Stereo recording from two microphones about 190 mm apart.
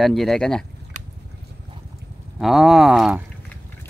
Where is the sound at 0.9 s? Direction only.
40° right (ahead or behind).